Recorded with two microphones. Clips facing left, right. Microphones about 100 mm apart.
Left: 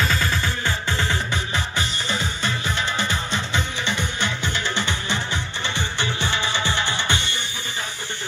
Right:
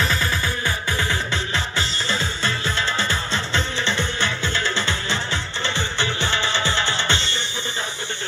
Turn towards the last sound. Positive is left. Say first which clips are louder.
# right 1 dB
turn(degrees=15)  # may be behind; listen again after turning